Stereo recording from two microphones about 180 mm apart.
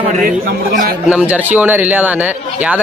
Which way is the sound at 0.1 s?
55° right (ahead or behind).